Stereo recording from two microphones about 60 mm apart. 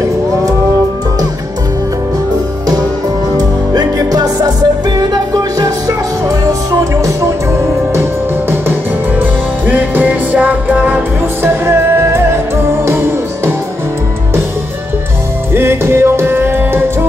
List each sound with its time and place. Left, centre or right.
3.3 s music: right
7.9 s music: right
9.2 s music: right
11.4 s music: right
15.5 s music: right